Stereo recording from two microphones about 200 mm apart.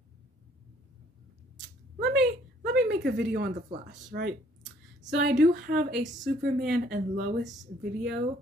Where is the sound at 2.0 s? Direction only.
55° right (ahead or behind).